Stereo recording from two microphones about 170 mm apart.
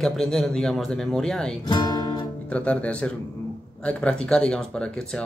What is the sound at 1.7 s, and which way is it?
Speech, 25° left (ahead or behind).